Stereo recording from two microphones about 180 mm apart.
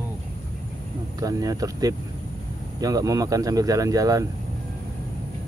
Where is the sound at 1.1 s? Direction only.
20° right (ahead or behind).